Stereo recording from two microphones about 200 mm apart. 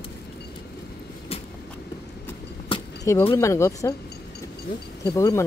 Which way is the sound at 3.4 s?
15° left (ahead or behind).